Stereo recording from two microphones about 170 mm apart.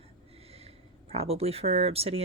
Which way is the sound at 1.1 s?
35° right (ahead or behind).